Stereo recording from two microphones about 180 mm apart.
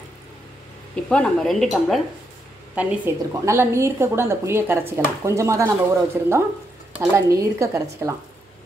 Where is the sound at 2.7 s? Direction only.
10° right (ahead or behind).